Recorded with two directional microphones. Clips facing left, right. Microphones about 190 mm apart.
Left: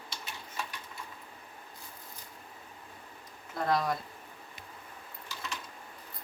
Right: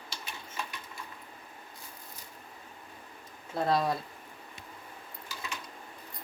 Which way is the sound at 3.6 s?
30° right (ahead or behind).